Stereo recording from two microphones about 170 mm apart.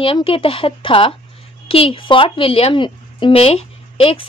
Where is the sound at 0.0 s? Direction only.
30° left (ahead or behind).